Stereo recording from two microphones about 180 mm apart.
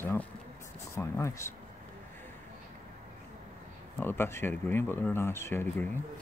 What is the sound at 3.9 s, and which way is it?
Speech, 10° left (ahead or behind).